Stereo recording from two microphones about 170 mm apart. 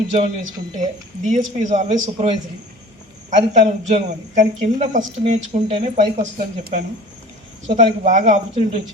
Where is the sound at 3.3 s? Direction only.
45° right (ahead or behind).